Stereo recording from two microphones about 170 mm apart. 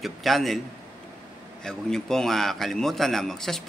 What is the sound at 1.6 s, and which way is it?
Speech, 5° left (ahead or behind).